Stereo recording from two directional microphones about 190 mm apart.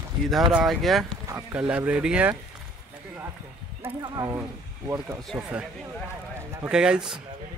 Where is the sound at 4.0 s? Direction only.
20° right (ahead or behind).